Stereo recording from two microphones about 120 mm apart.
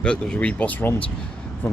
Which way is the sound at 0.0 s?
5° left (ahead or behind).